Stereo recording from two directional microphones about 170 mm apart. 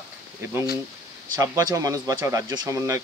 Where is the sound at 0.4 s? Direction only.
15° right (ahead or behind).